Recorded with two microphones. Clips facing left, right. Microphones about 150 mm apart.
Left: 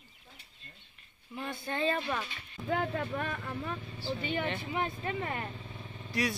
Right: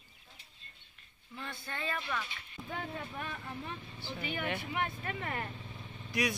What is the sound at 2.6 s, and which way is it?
Speech, 85° left.